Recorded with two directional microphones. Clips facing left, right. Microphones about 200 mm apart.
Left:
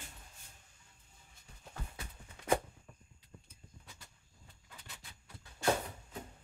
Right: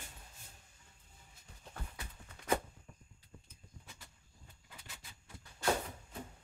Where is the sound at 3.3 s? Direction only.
Centre (ahead or behind).